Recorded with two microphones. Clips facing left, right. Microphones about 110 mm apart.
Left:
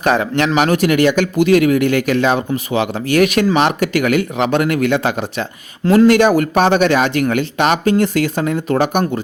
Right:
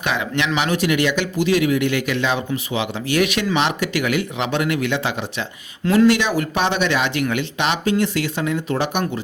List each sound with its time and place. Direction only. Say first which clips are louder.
0.0 s speech: left 7 dB; 40° left (ahead or behind)